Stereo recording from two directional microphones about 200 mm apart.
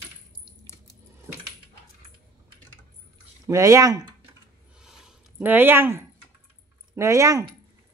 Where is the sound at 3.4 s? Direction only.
15° right (ahead or behind).